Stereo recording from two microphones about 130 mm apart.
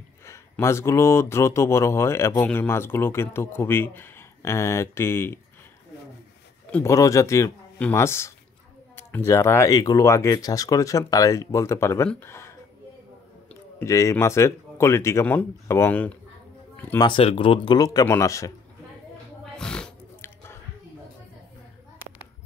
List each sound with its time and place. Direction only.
0.2 s speech: 20° left (ahead or behind)
6.8 s speech: 25° left (ahead or behind)
13.8 s speech: 25° left (ahead or behind)
17.0 s speech: 45° left (ahead or behind)
17.7 s speech: 30° left (ahead or behind)
19.5 s a sound: 5° left (ahead or behind)